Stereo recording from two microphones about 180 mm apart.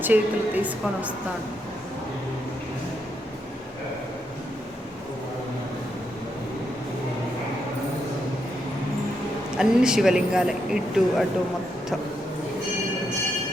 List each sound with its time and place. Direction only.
0.0 s a woman's voice: 10° right (ahead or behind)
9.6 s speech: 5° right (ahead or behind)